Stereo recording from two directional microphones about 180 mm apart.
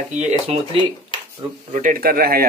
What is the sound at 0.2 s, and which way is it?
Speech, 35° right (ahead or behind).